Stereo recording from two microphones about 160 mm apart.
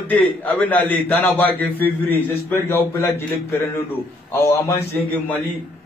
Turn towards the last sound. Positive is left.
turn(degrees=10)  # may be behind; listen again after turning